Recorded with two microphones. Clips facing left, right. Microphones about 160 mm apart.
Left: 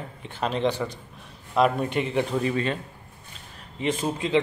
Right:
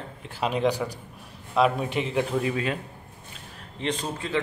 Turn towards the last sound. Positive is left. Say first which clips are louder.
# left 4 dB
turn(degrees=15)  # may be behind; listen again after turning